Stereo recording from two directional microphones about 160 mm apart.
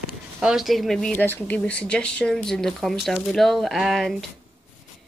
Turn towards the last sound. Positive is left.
turn(degrees=0)  # may be behind; listen again after turning